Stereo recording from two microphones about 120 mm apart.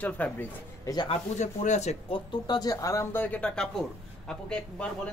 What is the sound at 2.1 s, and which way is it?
Speech, 35° left (ahead or behind).